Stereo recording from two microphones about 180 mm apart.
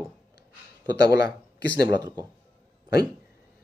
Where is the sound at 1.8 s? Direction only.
20° right (ahead or behind).